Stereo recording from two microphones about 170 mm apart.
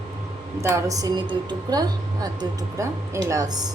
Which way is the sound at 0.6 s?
15° right (ahead or behind).